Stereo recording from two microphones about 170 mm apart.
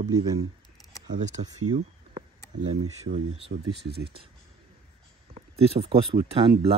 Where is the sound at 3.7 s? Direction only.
70° right (ahead or behind).